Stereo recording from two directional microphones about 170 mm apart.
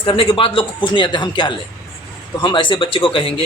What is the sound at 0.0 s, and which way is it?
Speech, 30° left (ahead or behind).